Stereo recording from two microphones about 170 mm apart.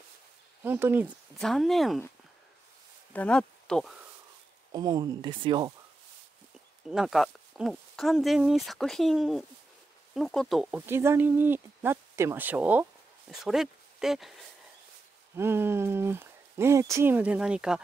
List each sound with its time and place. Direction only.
0.7 s speech: 10° right (ahead or behind)
1.4 s speech: centre (ahead or behind)
3.1 s speech: 5° left (ahead or behind)
4.7 s speech: 25° right (ahead or behind)
6.9 s speech: centre (ahead or behind)
10.9 s speech: 15° right (ahead or behind)
15.3 s speech: 15° right (ahead or behind)